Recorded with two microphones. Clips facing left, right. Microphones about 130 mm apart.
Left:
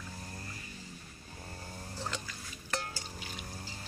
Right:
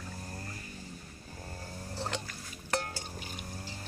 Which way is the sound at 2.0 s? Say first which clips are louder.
Right 3 dB; 60° right (ahead or behind).